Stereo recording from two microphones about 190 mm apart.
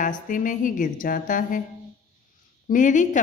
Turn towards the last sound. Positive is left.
turn(degrees=40)  # may be behind; listen again after turning